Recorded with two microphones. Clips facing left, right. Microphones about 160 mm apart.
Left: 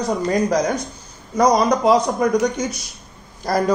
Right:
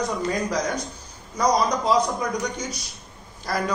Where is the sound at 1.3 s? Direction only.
55° left (ahead or behind).